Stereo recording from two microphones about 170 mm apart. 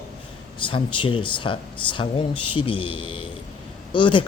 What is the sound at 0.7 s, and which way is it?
Speech, 30° left (ahead or behind).